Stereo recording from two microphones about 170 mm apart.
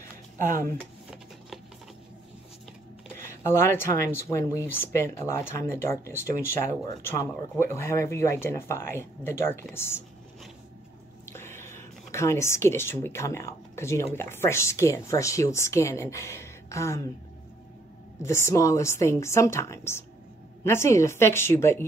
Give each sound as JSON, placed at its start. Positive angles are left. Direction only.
{"t": 0.4, "sound": "speech", "side_deg": -50}
{"t": 3.2, "sound": "speech", "side_deg": 15}
{"t": 11.2, "sound": "a sound", "side_deg": 15}
{"t": 14.1, "sound": "speech", "side_deg": 15}
{"t": 18.2, "sound": "speech", "side_deg": 15}